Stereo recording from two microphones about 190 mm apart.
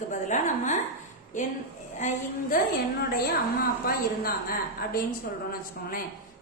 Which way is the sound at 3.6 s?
50° left (ahead or behind).